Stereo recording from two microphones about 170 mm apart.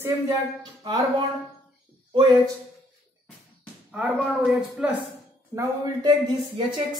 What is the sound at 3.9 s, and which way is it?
Speech, 5° right (ahead or behind).